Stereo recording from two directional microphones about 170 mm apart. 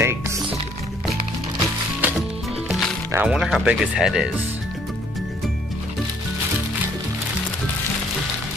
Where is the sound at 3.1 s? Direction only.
5° right (ahead or behind).